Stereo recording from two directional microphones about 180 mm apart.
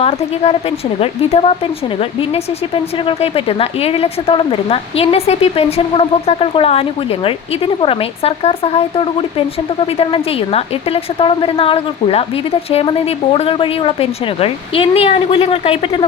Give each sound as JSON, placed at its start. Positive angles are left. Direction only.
{"t": 0.9, "sound": "speech", "side_deg": 30}